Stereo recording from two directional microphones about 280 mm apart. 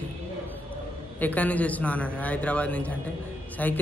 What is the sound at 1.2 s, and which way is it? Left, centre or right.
A man's voice, centre.